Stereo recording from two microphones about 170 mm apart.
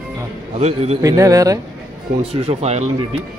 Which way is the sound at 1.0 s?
20° right (ahead or behind).